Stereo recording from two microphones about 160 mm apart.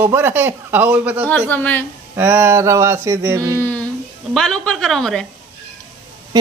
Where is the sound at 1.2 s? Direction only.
10° left (ahead or behind).